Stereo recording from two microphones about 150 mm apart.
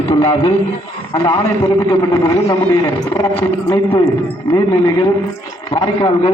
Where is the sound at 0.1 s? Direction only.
20° left (ahead or behind).